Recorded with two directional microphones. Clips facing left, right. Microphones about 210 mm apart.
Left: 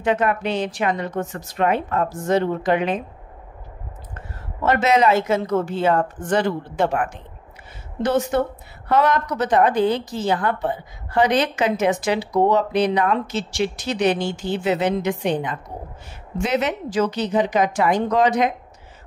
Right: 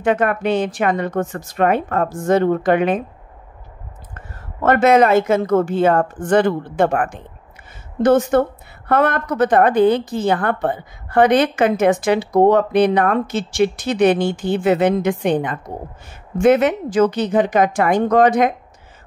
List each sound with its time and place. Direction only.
0.0 s a woman's voice: 55° right (ahead or behind)
4.6 s a woman's voice: 50° right (ahead or behind)